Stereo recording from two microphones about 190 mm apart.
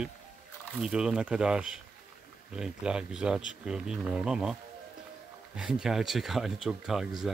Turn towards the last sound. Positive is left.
turn(degrees=0)  # may be behind; listen again after turning